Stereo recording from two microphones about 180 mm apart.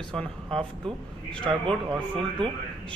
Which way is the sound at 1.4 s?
30° right (ahead or behind).